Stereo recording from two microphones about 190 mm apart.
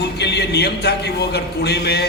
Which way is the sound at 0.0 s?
60° left (ahead or behind).